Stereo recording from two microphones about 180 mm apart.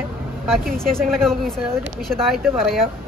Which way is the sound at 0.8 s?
Centre (ahead or behind).